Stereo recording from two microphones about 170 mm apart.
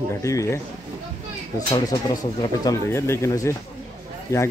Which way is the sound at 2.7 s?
15° left (ahead or behind).